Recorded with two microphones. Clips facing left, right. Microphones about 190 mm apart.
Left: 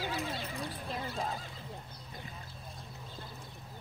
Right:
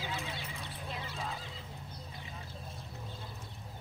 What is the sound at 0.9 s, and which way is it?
Duck, 40° left (ahead or behind).